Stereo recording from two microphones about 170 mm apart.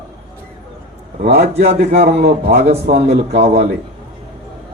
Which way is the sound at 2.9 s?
70° right (ahead or behind).